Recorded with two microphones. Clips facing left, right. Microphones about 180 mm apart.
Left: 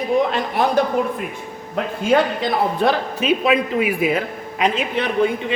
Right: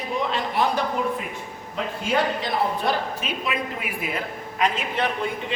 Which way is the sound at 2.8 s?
80° left.